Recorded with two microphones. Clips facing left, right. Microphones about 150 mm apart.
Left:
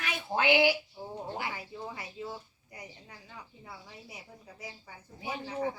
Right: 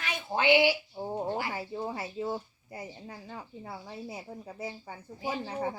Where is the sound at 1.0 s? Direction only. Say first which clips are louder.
Right 6 dB; 40° right (ahead or behind).